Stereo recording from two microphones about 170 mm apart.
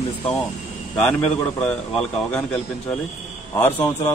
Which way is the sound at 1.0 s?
5° left (ahead or behind).